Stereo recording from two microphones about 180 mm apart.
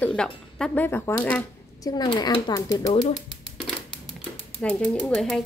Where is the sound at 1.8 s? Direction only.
20° left (ahead or behind).